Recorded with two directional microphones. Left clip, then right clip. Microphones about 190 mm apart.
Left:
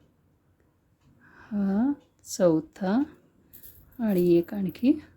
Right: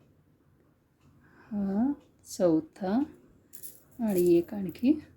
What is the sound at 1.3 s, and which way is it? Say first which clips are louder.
A woman's voice: left 4 dB; 25° left (ahead or behind).